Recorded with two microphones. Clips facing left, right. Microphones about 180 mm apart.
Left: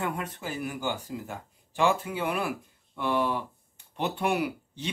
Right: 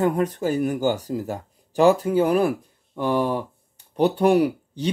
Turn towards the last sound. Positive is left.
turn(degrees=-35)  # may be behind; listen again after turning